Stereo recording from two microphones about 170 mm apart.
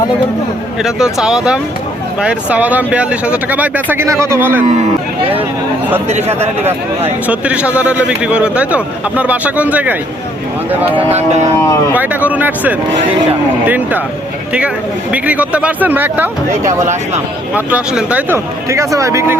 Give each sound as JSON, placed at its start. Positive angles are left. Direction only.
{"t": 0.8, "sound": "speech", "side_deg": -5}
{"t": 6.1, "sound": "a man's voice", "side_deg": -40}
{"t": 7.3, "sound": "speech", "side_deg": -5}
{"t": 10.9, "sound": "a man's voice", "side_deg": -40}
{"t": 11.5, "sound": "speech", "side_deg": 15}
{"t": 11.9, "sound": "speech", "side_deg": -10}
{"t": 15.1, "sound": "speech", "side_deg": -10}